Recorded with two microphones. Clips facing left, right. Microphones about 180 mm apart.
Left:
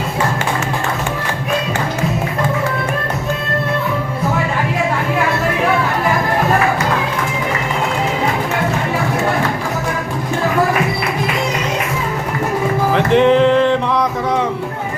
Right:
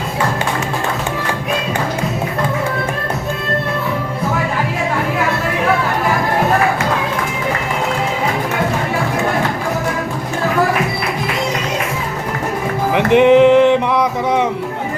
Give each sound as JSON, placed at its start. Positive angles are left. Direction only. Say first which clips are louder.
{"t": 12.9, "sound": "music", "louder": "right 3 dB", "side_deg": -15}